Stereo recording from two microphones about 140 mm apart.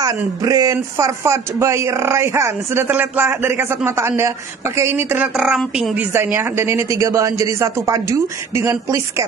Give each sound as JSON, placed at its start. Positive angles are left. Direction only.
{"t": 0.0, "sound": "speech", "side_deg": -25}
{"t": 5.9, "sound": "speech", "side_deg": -15}